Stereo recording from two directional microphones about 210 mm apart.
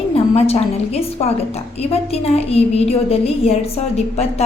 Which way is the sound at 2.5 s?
30° left (ahead or behind).